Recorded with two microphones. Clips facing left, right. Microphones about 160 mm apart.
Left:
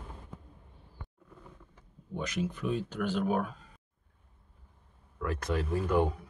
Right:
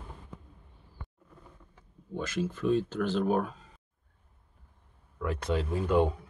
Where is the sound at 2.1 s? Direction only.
15° left (ahead or behind).